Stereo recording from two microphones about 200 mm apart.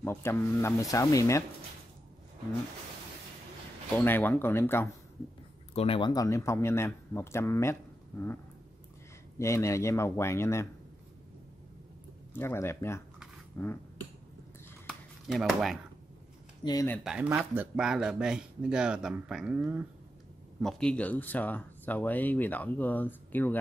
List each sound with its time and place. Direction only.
0.0 s speech: 10° left (ahead or behind)
3.9 s speech: 10° left (ahead or behind)
5.8 s speech: 25° left (ahead or behind); by 8.3 s 10° left (ahead or behind)
9.4 s speech: 15° left (ahead or behind)
12.4 s speech: 10° left (ahead or behind)
15.2 s speech: centre (ahead or behind)
16.6 s speech: 20° left (ahead or behind)
16.9 s speech: 5° right (ahead or behind)
20.6 s speech: 5° left (ahead or behind)